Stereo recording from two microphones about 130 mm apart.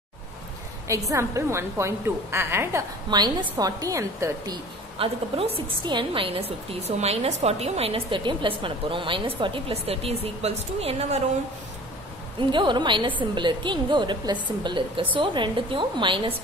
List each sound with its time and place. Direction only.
0.8 s a woman's voice: 25° right (ahead or behind)
3.1 s a woman's voice: 35° right (ahead or behind)
4.9 s a woman's voice: 45° right (ahead or behind)
12.4 s a woman's voice: 40° right (ahead or behind)